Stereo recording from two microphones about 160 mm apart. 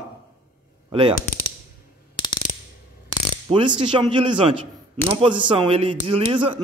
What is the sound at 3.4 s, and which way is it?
Speech, 30° right (ahead or behind).